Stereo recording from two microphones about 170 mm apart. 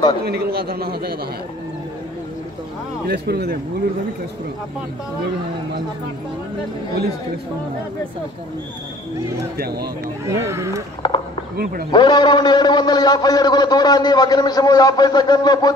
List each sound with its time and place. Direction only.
0.2 s a man's voice: 65° right (ahead or behind)
3.1 s speech: 70° right (ahead or behind)
9.6 s speech: 70° right (ahead or behind)
10.2 s speech: 15° right (ahead or behind)
11.0 s a sound: 25° left (ahead or behind)
11.5 s a man's voice: 60° right (ahead or behind)
11.9 s a man's voice: 25° left (ahead or behind)